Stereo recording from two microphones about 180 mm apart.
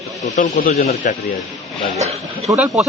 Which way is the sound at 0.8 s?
45° left (ahead or behind).